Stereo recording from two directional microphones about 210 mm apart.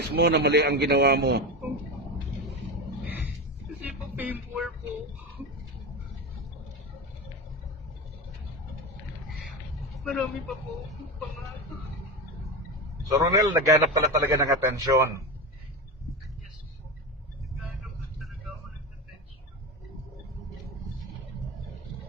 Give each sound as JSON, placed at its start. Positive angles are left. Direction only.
{"t": 0.1, "sound": "a man's voice", "side_deg": -50}
{"t": 4.1, "sound": "music", "side_deg": -10}
{"t": 10.0, "sound": "speech", "side_deg": 0}
{"t": 13.1, "sound": "a man's voice", "side_deg": -20}